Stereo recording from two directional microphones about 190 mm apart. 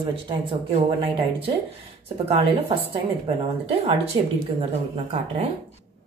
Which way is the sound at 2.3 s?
30° right (ahead or behind).